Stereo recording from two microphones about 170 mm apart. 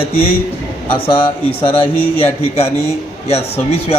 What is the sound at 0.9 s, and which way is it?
A man's voice, 30° left (ahead or behind).